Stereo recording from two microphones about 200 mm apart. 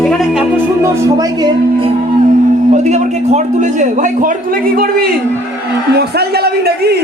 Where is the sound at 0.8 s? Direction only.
20° right (ahead or behind).